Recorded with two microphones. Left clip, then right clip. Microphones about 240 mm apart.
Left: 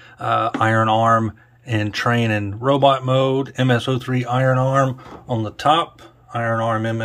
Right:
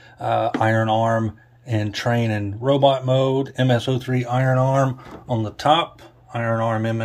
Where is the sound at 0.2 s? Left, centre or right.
Centre.